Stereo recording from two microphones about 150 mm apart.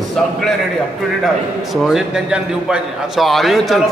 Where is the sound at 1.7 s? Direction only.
Centre (ahead or behind).